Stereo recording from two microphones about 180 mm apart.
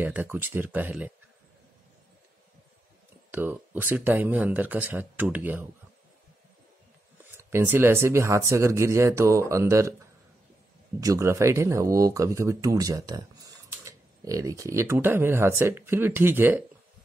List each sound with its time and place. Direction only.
0.0 s speech: 10° right (ahead or behind)
3.3 s speech: 10° right (ahead or behind)
7.3 s speech: 15° right (ahead or behind)
11.0 s speech: 15° right (ahead or behind)